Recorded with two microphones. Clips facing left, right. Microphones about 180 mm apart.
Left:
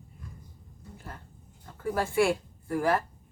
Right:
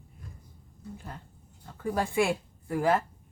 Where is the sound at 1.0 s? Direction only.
15° right (ahead or behind).